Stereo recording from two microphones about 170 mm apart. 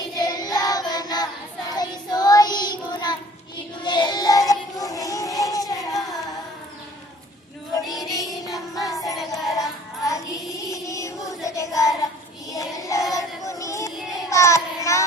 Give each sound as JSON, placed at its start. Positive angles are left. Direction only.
{"t": 0.2, "sound": "child singing", "side_deg": 20}
{"t": 3.8, "sound": "music", "side_deg": 25}
{"t": 7.9, "sound": "music", "side_deg": 20}
{"t": 11.4, "sound": "child singing", "side_deg": 20}